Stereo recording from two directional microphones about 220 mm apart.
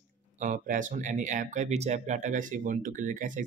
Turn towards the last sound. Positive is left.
turn(degrees=-35)  # may be behind; listen again after turning